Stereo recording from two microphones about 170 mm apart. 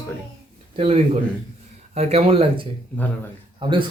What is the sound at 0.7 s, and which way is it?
A man's voice, 35° right (ahead or behind).